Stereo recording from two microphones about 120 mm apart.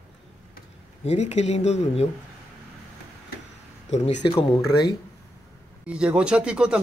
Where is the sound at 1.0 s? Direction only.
65° left (ahead or behind).